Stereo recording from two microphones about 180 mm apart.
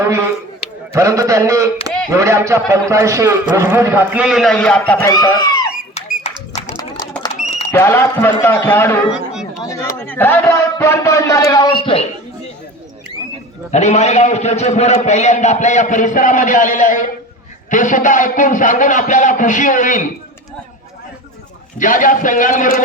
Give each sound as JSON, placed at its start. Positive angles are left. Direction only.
{"t": 0.0, "sound": "a man's voice", "side_deg": -15}
{"t": 5.9, "sound": "a sound", "side_deg": 40}
{"t": 7.4, "sound": "a sound", "side_deg": 40}
{"t": 7.7, "sound": "a man's voice", "side_deg": 15}
{"t": 9.1, "sound": "chatter", "side_deg": -5}
{"t": 9.6, "sound": "a man's voice", "side_deg": 15}
{"t": 13.7, "sound": "a man's voice", "side_deg": 40}
{"t": 21.8, "sound": "a man's voice", "side_deg": 50}